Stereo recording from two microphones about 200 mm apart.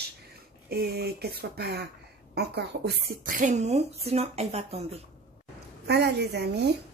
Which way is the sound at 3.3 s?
40° right (ahead or behind).